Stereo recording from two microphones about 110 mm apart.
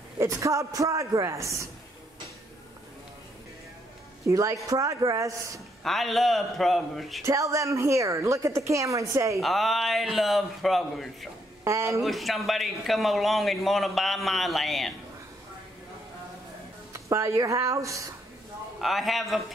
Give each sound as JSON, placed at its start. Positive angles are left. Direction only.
{"t": 0.2, "sound": "a woman's voice", "side_deg": -25}
{"t": 4.3, "sound": "a woman's voice", "side_deg": -30}
{"t": 5.9, "sound": "a man's voice", "side_deg": 0}
{"t": 7.2, "sound": "a woman's voice", "side_deg": -30}
{"t": 9.4, "sound": "a man's voice", "side_deg": 0}
{"t": 11.6, "sound": "a woman's voice", "side_deg": -25}
{"t": 12.0, "sound": "a man's voice", "side_deg": 0}
{"t": 16.9, "sound": "a woman's voice", "side_deg": -25}
{"t": 18.8, "sound": "a man's voice", "side_deg": 0}